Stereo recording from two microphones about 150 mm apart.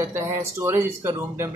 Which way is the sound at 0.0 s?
20° right (ahead or behind).